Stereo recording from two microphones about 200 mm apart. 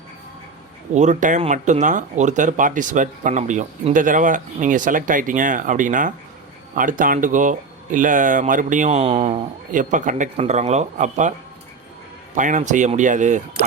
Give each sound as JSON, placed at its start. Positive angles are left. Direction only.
{"t": 0.9, "sound": "speech", "side_deg": -35}